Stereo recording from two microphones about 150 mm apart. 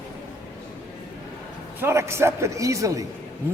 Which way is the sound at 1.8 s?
20° right (ahead or behind).